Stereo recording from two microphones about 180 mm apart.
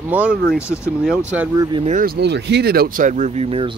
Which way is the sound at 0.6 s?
15° left (ahead or behind).